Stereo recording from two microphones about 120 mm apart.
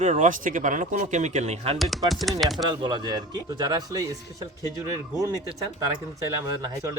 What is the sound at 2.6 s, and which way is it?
Speech, 40° right (ahead or behind).